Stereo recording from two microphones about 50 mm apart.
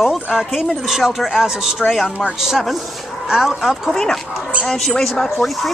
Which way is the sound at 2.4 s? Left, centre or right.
Centre.